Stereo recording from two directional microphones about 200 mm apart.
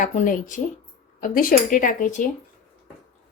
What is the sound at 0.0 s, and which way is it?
A woman's voice, 40° left (ahead or behind).